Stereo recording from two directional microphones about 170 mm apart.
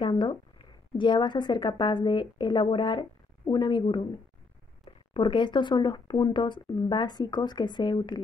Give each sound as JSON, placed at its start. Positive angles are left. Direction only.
{"t": 0.0, "sound": "speech", "side_deg": 30}